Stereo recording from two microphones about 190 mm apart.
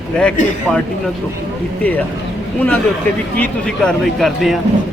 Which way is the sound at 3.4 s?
5° left (ahead or behind).